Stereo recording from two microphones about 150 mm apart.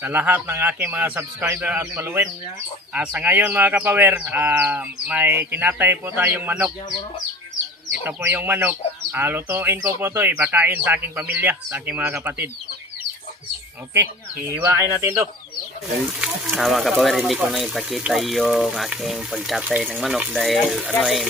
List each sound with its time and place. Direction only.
0.0 s speech: 10° right (ahead or behind)
8.0 s speech: 15° right (ahead or behind)
14.4 s speech: 15° right (ahead or behind)
16.2 s speech: centre (ahead or behind)